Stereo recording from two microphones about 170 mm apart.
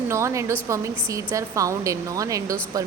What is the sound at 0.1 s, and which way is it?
A woman's voice, 15° right (ahead or behind).